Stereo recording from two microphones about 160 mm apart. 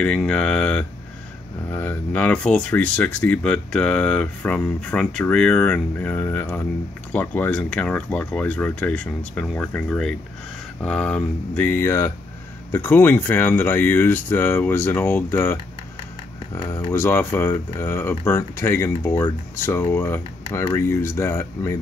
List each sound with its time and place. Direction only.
0.0 s speech: 5° left (ahead or behind)
16.6 s speech: 20° left (ahead or behind)